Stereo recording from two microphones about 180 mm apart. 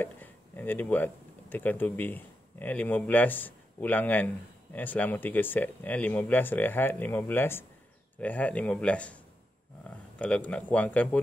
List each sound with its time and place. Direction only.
0.0 s speech: 10° left (ahead or behind)